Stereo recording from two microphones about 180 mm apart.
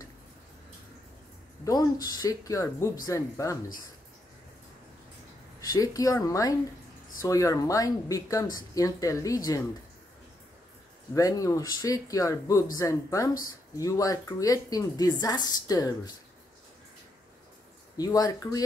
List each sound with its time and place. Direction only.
1.6 s speech: 20° left (ahead or behind)
5.6 s speech: 20° left (ahead or behind)
11.1 s speech: 20° left (ahead or behind)
17.9 s speech: 20° left (ahead or behind)